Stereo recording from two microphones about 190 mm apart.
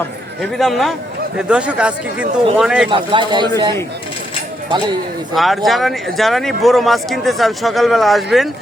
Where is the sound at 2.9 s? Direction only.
25° right (ahead or behind).